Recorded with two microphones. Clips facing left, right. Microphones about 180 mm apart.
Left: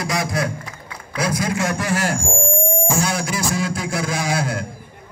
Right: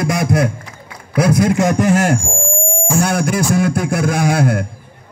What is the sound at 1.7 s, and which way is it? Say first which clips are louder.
Speech: right 8 dB; 20° right (ahead or behind).